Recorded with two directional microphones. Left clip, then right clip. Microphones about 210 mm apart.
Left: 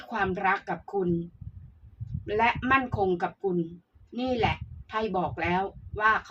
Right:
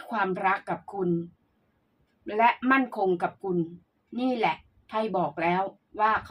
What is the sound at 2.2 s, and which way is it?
Speech, 25° right (ahead or behind).